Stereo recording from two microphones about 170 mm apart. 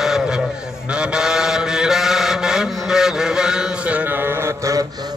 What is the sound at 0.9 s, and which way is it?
Chant, 5° right (ahead or behind).